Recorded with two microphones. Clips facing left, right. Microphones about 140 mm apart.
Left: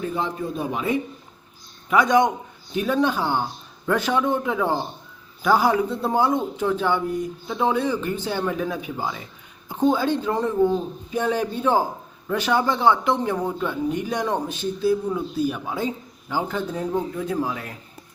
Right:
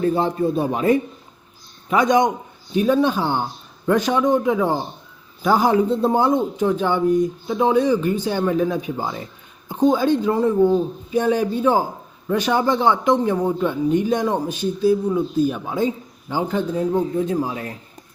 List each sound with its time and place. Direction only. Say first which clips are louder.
0.1 s speech: right 7 dB; 35° right (ahead or behind)
1.9 s a man's voice: right 1 dB; 20° right (ahead or behind)
9.6 s a man's voice: right 3 dB; 15° right (ahead or behind)